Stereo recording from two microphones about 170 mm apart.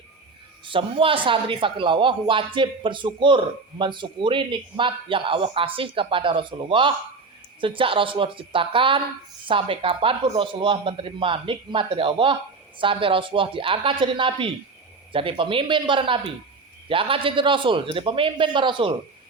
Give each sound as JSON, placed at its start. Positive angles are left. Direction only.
{"t": 0.6, "sound": "a man's voice", "side_deg": -30}